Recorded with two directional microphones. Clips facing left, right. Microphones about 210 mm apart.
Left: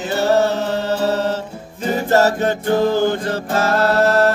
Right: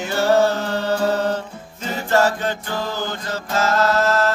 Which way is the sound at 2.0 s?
40° left (ahead or behind).